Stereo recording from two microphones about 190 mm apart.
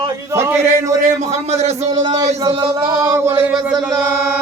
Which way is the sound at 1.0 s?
40° right (ahead or behind).